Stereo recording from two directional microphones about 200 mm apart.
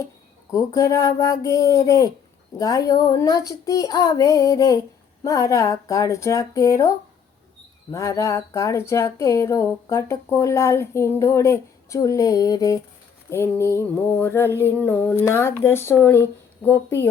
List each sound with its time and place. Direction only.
0.5 s speech: 15° left (ahead or behind)